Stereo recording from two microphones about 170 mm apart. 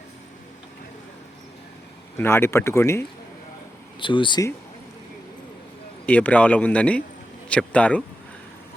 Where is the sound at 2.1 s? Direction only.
15° left (ahead or behind).